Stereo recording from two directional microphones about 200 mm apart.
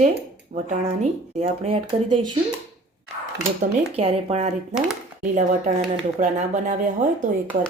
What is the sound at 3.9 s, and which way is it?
Speech, 30° right (ahead or behind).